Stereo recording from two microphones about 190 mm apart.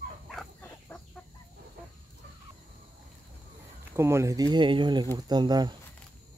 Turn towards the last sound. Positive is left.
turn(degrees=-20)  # may be behind; listen again after turning